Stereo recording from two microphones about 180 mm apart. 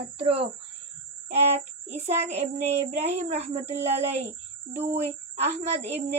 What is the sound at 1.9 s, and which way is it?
Speech, 40° right (ahead or behind).